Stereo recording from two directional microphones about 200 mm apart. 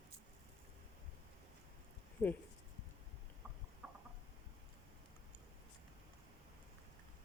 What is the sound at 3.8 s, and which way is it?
Chicken, 5° right (ahead or behind).